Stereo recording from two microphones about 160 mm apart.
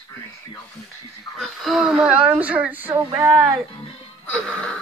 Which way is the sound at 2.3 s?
10° right (ahead or behind).